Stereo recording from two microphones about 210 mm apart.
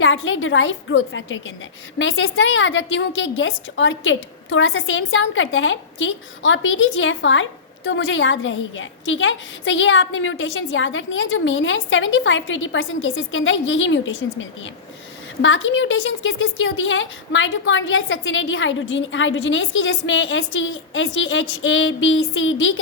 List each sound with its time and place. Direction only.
0.0 s a woman's voice: 65° left (ahead or behind)